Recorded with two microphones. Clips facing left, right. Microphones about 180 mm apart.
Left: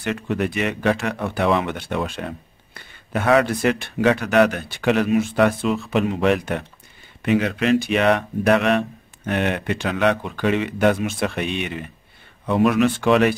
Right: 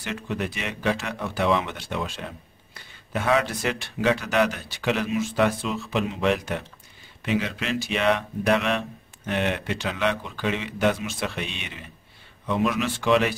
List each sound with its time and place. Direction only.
0.0 s speech: 55° left (ahead or behind)